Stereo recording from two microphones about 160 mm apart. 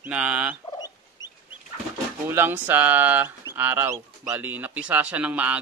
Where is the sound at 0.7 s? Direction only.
25° left (ahead or behind).